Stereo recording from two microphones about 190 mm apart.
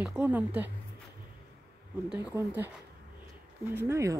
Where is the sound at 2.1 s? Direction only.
10° right (ahead or behind).